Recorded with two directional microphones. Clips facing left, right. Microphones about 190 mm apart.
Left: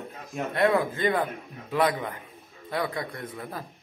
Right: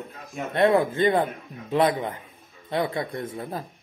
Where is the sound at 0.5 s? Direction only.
25° right (ahead or behind).